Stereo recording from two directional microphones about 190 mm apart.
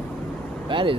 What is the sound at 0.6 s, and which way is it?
Speech, 25° right (ahead or behind).